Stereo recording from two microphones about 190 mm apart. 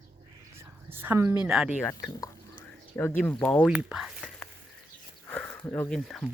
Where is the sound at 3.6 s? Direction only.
5° right (ahead or behind).